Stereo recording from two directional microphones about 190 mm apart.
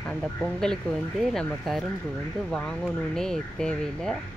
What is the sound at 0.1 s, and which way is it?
Speech, centre (ahead or behind).